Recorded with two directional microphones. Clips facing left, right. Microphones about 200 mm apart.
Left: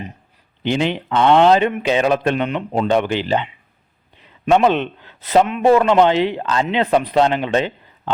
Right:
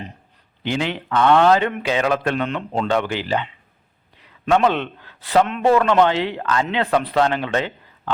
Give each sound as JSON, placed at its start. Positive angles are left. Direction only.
{"t": 0.6, "sound": "a man's voice", "side_deg": 20}